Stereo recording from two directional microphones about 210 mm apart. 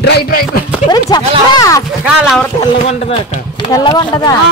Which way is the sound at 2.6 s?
30° left (ahead or behind).